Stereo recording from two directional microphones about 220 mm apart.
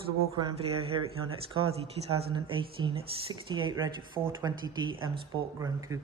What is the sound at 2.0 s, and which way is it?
Speech, 25° right (ahead or behind).